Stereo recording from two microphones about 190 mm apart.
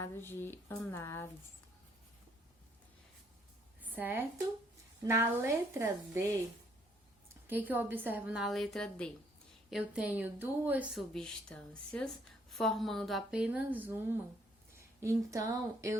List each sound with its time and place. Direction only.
0.0 s speech: 10° left (ahead or behind)
3.8 s a sound: 10° right (ahead or behind)
5.0 s a woman's voice: 15° right (ahead or behind)
7.4 s a woman's voice: 10° right (ahead or behind)
11.1 s a woman's voice: 5° left (ahead or behind); by 16.0 s 15° right (ahead or behind)